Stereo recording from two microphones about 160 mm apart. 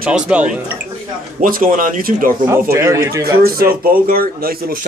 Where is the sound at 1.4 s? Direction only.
60° right (ahead or behind).